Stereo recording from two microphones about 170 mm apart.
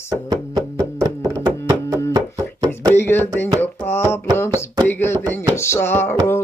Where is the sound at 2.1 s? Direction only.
20° right (ahead or behind).